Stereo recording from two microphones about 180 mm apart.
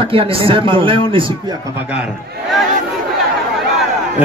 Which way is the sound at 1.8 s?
5° right (ahead or behind).